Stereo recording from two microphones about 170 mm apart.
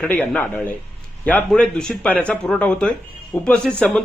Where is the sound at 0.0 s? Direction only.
10° left (ahead or behind).